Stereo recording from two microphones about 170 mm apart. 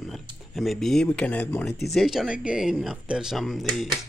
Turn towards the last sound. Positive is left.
turn(degrees=0)  # may be behind; listen again after turning